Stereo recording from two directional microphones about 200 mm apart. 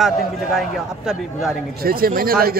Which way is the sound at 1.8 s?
50° right (ahead or behind).